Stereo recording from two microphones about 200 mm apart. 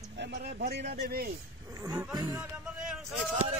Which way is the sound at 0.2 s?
55° right (ahead or behind).